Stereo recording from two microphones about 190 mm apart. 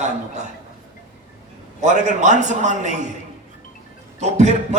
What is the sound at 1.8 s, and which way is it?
A man's voice, 40° right (ahead or behind).